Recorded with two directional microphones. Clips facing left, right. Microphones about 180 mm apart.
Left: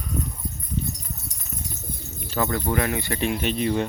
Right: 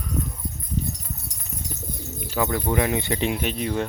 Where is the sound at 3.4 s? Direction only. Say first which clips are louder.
Left 2 dB; 5° right (ahead or behind).